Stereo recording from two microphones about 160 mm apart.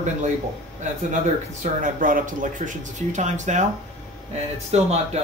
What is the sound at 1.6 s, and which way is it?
Speech, 55° right (ahead or behind).